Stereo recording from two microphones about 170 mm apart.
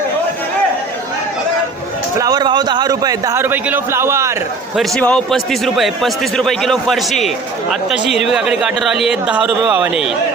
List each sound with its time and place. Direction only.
2.1 s a man's voice: 20° right (ahead or behind)
4.8 s a man's voice: 5° left (ahead or behind)